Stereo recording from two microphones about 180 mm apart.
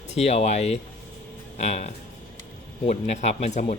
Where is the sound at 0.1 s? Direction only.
35° left (ahead or behind).